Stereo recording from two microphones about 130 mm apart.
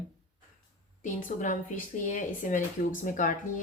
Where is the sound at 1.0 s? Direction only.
90° left.